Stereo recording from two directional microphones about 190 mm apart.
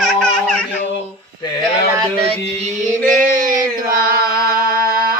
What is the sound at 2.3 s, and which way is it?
Female singing, 40° right (ahead or behind).